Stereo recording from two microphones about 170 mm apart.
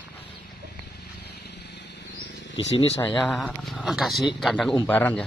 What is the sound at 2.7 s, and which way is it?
Speech, 35° left (ahead or behind).